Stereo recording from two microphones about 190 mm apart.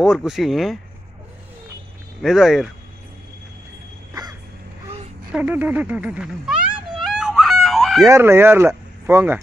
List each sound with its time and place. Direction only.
0.0 s speech: centre (ahead or behind)
2.2 s speech: centre (ahead or behind)
4.1 s vehicle: 20° right (ahead or behind)
4.8 s a sound: 35° right (ahead or behind)
5.3 s speech: 10° right (ahead or behind)
7.0 s a sound: 5° right (ahead or behind)
8.0 s speech: 15° right (ahead or behind)